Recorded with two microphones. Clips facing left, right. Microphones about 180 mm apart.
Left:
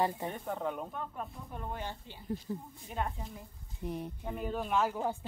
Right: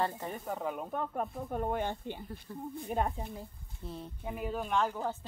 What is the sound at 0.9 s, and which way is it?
Speech, 55° right (ahead or behind).